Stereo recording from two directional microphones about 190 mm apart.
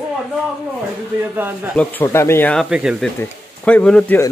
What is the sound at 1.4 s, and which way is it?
Speech, 10° right (ahead or behind).